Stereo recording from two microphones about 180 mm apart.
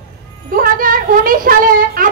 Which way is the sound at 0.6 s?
50° right (ahead or behind).